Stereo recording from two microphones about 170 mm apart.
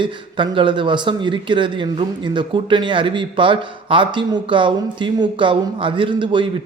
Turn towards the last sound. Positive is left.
turn(degrees=-30)  # may be behind; listen again after turning